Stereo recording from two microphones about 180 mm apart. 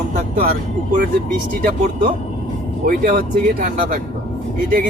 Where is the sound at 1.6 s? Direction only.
50° right (ahead or behind).